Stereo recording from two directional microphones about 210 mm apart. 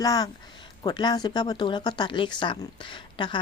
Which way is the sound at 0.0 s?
20° left (ahead or behind).